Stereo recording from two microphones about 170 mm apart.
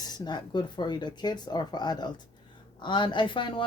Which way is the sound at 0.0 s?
25° left (ahead or behind).